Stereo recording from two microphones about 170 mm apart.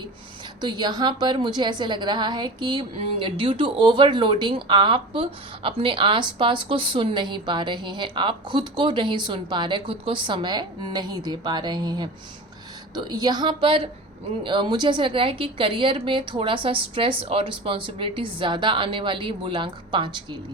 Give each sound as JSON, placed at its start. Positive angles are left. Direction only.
{"t": 0.6, "sound": "a woman's voice", "side_deg": -25}